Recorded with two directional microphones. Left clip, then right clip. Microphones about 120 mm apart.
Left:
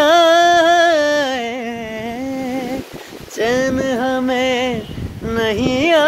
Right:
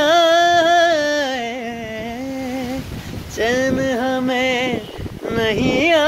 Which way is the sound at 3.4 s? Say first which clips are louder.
Left 1 dB; 55° left (ahead or behind).